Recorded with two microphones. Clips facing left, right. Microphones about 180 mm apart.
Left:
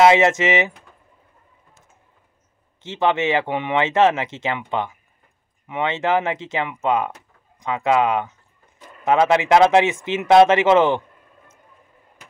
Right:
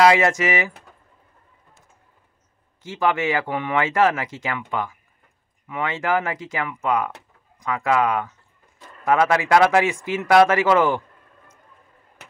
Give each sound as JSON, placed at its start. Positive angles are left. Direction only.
{"t": 0.0, "sound": "speech", "side_deg": 25}
{"t": 2.8, "sound": "speech", "side_deg": 25}